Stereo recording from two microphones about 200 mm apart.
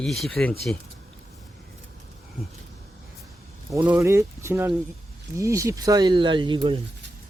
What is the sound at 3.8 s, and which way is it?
Speech, 10° right (ahead or behind).